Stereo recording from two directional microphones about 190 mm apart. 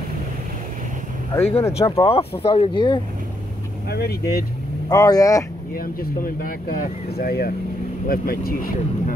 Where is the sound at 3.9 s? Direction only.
55° left (ahead or behind).